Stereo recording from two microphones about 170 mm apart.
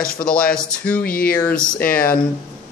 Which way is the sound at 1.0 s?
60° left (ahead or behind).